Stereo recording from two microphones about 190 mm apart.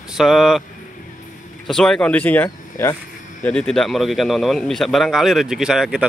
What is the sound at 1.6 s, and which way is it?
Speech, 5° left (ahead or behind).